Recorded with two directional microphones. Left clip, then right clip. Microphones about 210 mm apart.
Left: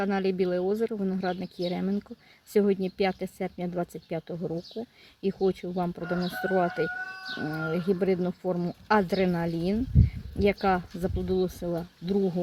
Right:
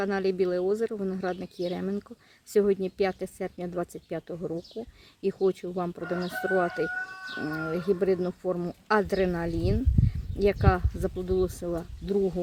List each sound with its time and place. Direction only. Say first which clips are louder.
0.0 s speech: right 1 dB; 10° left (ahead or behind)